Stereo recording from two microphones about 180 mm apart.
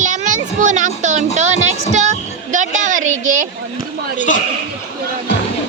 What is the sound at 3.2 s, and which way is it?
Speech, 45° right (ahead or behind).